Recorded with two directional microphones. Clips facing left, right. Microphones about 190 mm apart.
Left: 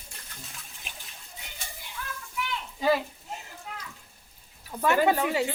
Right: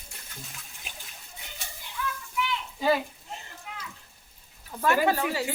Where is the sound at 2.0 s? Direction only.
45° left (ahead or behind).